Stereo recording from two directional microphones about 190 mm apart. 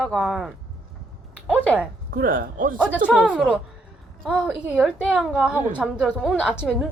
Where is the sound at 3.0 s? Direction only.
5° right (ahead or behind).